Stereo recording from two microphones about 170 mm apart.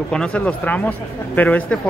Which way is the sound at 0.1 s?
5° left (ahead or behind).